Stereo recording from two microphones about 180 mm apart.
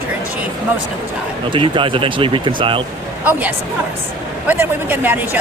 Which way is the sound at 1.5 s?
30° right (ahead or behind).